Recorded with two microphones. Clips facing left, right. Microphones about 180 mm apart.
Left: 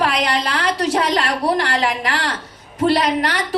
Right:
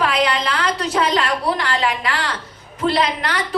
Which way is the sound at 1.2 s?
40° left (ahead or behind).